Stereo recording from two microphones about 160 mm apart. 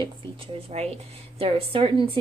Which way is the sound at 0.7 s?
40° right (ahead or behind).